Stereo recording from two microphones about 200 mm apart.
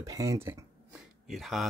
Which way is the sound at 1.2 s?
Centre (ahead or behind).